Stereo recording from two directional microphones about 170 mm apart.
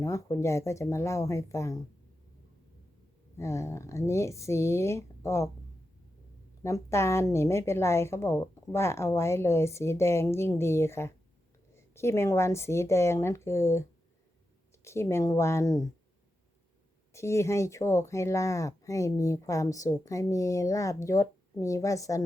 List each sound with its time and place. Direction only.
0.0 s a woman's voice: 20° left (ahead or behind)
3.3 s a woman's voice: 15° left (ahead or behind)
6.6 s a woman's voice: 15° left (ahead or behind)
14.8 s a woman's voice: 15° left (ahead or behind)
17.1 s speech: 15° left (ahead or behind)